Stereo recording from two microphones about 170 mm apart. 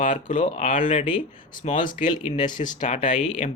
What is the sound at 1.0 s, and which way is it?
Speech, 30° left (ahead or behind).